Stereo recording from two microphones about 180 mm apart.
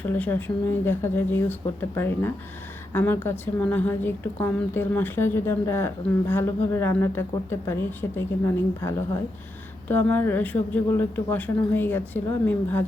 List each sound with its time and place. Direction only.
0.0 s speech: 10° left (ahead or behind)